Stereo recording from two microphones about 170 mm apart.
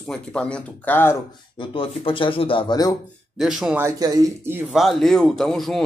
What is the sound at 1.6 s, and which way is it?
Speech, 30° left (ahead or behind).